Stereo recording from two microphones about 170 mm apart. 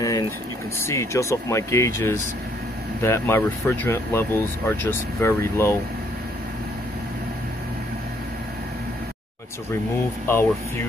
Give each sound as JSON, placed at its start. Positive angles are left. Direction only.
{"t": 0.7, "sound": "speech", "side_deg": 15}
{"t": 10.2, "sound": "speech", "side_deg": 15}